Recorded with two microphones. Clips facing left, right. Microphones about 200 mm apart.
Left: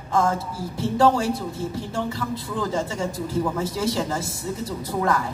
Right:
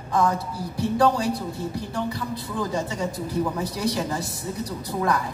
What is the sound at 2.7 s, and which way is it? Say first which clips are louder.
A man's voice: left 1 dB; 20° right (ahead or behind).